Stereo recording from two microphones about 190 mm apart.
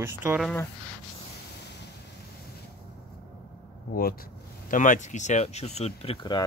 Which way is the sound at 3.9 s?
50° left (ahead or behind).